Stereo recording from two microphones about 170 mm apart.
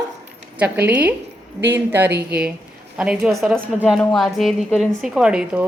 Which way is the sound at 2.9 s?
5° right (ahead or behind).